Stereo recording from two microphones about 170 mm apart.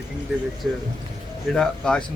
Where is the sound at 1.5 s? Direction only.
5° left (ahead or behind).